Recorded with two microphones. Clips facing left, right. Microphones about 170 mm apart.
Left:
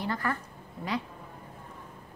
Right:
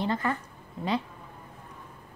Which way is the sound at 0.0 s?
20° right (ahead or behind).